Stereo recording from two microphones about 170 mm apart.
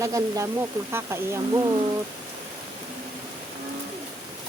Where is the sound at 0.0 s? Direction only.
20° right (ahead or behind).